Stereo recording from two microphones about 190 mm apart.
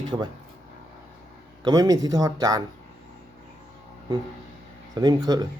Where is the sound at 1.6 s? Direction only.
20° right (ahead or behind).